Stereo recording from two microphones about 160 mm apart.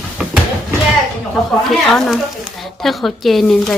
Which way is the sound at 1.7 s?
Centre (ahead or behind).